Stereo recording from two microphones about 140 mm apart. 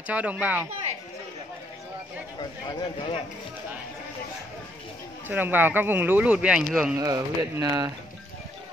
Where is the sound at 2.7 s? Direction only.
35° left (ahead or behind).